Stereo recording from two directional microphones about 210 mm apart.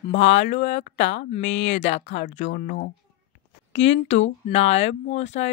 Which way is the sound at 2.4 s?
35° left (ahead or behind).